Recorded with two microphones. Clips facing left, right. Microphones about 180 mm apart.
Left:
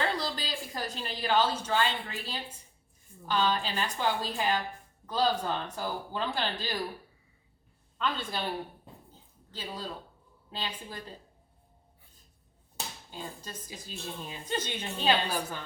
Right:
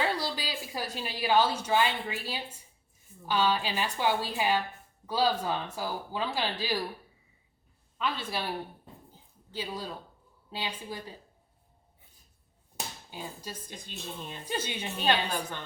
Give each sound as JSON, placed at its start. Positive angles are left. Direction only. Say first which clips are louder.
{"t": 0.0, "sound": "a woman's voice", "louder": "right 1 dB", "side_deg": -10}
{"t": 7.9, "sound": "speech", "louder": "even", "side_deg": -5}
{"t": 9.5, "sound": "speech", "louder": "right 2 dB", "side_deg": -10}
{"t": 12.7, "sound": "a sound", "louder": "right 1 dB", "side_deg": -10}
{"t": 13.7, "sound": "speech", "louder": "left 1 dB", "side_deg": 5}
{"t": 14.4, "sound": "speech", "louder": "even", "side_deg": -10}
{"t": 15.0, "sound": "speech", "louder": "left 1 dB", "side_deg": 5}